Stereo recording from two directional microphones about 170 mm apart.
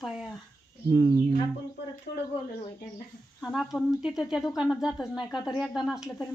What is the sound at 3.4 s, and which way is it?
Speech, centre (ahead or behind).